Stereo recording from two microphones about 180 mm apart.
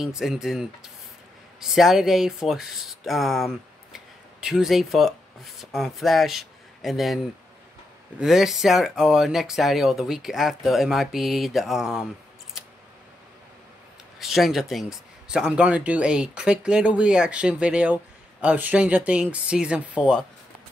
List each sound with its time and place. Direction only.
0.0 s speech: 5° right (ahead or behind)
8.2 s speech: 5° right (ahead or behind)
14.2 s speech: centre (ahead or behind)